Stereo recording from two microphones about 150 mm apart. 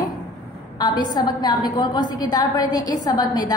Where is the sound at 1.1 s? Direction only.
30° left (ahead or behind).